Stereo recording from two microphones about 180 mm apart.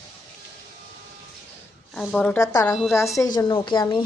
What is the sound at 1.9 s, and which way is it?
Speech, 5° left (ahead or behind).